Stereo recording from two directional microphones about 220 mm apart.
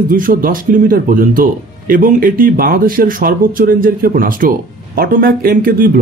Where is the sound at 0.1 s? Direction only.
40° right (ahead or behind).